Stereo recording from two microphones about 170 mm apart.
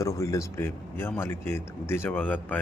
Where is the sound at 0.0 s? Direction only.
20° left (ahead or behind).